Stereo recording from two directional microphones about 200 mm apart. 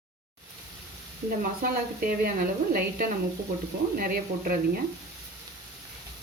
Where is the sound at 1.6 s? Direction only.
45° right (ahead or behind).